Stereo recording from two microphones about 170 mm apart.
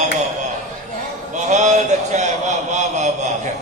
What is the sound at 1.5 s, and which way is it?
Speech, 45° right (ahead or behind).